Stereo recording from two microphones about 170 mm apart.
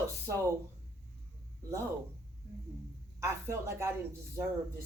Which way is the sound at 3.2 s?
15° right (ahead or behind).